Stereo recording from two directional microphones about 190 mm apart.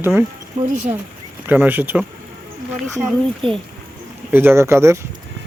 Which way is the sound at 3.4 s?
30° right (ahead or behind).